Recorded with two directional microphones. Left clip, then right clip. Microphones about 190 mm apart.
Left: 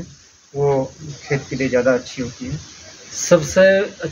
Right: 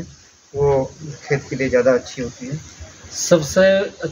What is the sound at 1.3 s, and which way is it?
Speech, 10° right (ahead or behind).